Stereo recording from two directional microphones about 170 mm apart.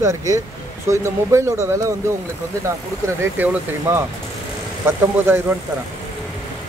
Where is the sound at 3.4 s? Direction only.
15° right (ahead or behind).